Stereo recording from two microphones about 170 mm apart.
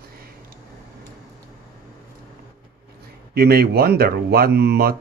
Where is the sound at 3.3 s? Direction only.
70° right (ahead or behind).